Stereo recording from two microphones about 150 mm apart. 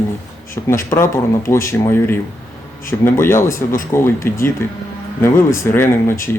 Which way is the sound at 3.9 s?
15° left (ahead or behind).